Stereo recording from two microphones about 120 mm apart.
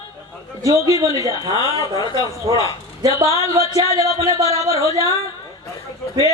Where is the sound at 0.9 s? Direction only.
30° right (ahead or behind).